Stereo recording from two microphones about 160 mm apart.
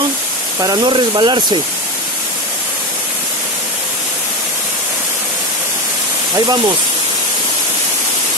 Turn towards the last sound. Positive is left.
turn(degrees=-25)  # may be behind; listen again after turning